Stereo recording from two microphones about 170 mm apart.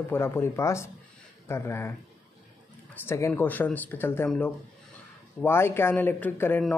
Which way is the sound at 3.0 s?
15° left (ahead or behind).